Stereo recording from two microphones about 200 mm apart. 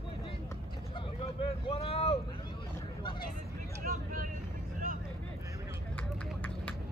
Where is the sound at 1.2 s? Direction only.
30° left (ahead or behind).